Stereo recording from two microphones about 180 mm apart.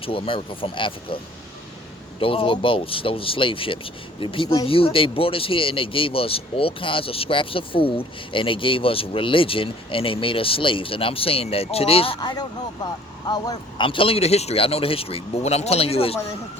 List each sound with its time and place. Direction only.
0.0 s speech: 30° left (ahead or behind)
2.2 s speech: 30° left (ahead or behind)